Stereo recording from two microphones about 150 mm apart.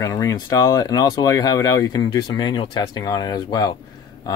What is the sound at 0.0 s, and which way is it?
Speech, 25° left (ahead or behind).